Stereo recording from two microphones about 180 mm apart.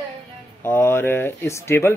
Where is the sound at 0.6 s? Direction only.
15° left (ahead or behind).